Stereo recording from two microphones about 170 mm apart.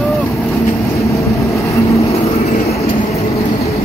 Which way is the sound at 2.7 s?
40° left (ahead or behind).